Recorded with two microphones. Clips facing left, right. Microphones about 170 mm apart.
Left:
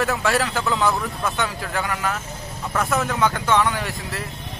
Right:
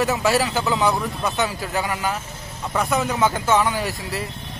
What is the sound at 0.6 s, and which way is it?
A man's voice, 20° right (ahead or behind).